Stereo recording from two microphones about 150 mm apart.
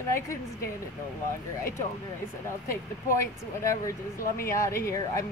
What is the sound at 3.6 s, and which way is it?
Speech, 20° left (ahead or behind).